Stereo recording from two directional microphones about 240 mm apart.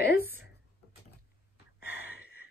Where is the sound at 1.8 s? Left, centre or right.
Left.